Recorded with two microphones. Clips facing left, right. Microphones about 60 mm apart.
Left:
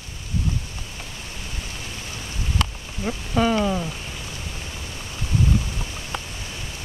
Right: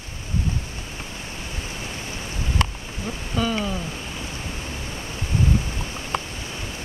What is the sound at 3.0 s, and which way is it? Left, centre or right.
Speech, left.